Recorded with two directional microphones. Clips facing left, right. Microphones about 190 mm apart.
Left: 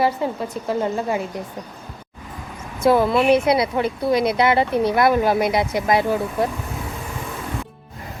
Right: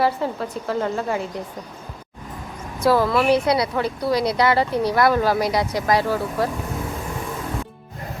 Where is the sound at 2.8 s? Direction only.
20° left (ahead or behind).